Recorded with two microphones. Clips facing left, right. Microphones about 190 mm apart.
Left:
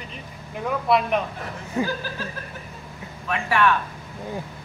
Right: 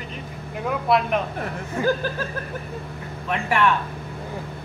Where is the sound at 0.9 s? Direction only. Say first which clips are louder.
Even; centre (ahead or behind).